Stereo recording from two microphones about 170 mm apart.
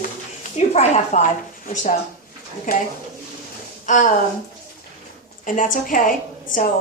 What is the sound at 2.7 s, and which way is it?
Speech, 60° left (ahead or behind).